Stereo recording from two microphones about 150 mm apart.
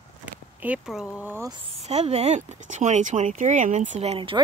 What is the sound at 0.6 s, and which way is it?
Speech, 5° right (ahead or behind).